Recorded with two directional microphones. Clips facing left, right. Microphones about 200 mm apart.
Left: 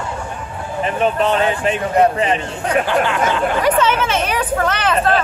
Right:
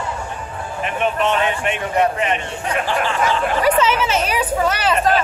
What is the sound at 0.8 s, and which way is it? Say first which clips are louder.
Speech: left 3 dB; 35° left (ahead or behind).